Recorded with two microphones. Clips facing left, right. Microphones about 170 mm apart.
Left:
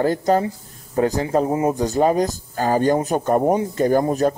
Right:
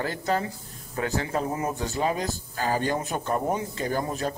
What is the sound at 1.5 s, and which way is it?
Speech, 30° left (ahead or behind).